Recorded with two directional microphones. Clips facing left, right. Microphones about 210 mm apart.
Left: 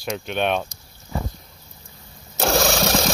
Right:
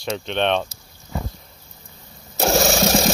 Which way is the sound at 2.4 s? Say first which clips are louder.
Right 2 dB; 5° right (ahead or behind).